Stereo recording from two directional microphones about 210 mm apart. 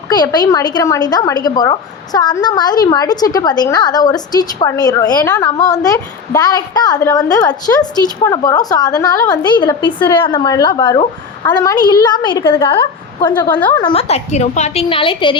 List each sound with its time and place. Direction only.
0.1 s a woman's voice: 20° left (ahead or behind)
13.5 s a woman's voice: 10° left (ahead or behind)
13.7 s a woman's voice: 25° left (ahead or behind)